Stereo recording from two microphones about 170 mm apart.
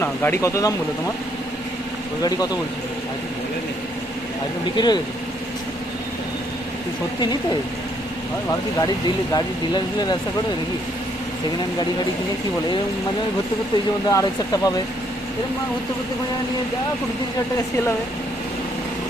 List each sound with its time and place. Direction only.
0.0 s speech: 15° left (ahead or behind)
2.2 s speech: 20° left (ahead or behind)
4.7 s speech: 25° left (ahead or behind)
8.7 s speech: 20° left (ahead or behind)
14.0 s speech: 20° left (ahead or behind)